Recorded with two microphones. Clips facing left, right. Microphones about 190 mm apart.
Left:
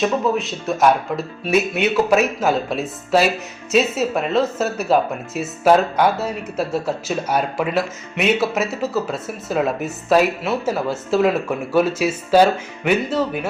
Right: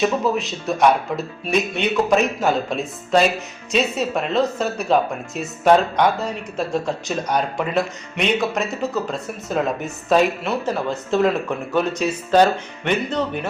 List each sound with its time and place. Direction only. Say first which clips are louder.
0.0 s speech: left 1 dB; centre (ahead or behind)